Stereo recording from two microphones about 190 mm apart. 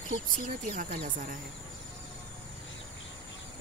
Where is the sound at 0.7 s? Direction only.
45° right (ahead or behind).